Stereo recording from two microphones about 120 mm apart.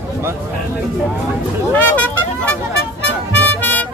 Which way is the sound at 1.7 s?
15° left (ahead or behind).